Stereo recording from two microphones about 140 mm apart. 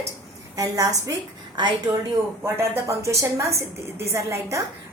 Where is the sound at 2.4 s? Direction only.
15° right (ahead or behind).